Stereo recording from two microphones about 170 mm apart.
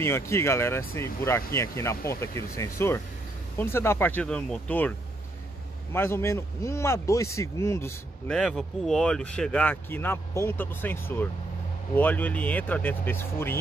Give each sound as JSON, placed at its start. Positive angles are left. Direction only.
{"t": 0.0, "sound": "speech", "side_deg": 15}
{"t": 5.9, "sound": "speech", "side_deg": 15}
{"t": 8.3, "sound": "speech", "side_deg": 5}